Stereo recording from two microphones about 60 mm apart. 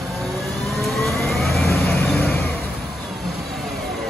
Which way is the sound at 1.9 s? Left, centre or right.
Left.